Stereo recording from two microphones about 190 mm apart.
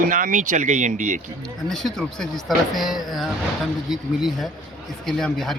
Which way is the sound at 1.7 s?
Centre (ahead or behind).